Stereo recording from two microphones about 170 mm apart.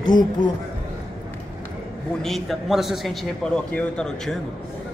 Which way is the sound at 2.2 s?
Centre (ahead or behind).